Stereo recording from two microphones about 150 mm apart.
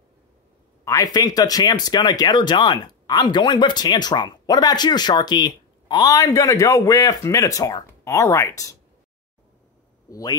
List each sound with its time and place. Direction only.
0.8 s speech: 25° left (ahead or behind)
10.0 s a man's voice: 20° left (ahead or behind)